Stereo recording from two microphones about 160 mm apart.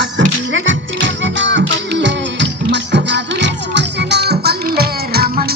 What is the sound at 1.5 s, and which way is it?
Music, 90° right.